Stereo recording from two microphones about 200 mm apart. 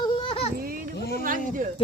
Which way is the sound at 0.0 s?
25° left (ahead or behind).